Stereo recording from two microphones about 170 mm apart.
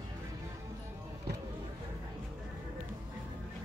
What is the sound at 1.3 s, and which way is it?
Vehicle, 70° right (ahead or behind).